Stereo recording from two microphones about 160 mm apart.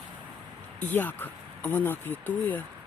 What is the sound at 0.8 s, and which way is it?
Speech, 10° left (ahead or behind).